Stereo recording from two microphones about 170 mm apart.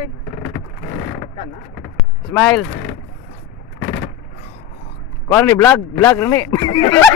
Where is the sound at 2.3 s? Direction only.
15° left (ahead or behind).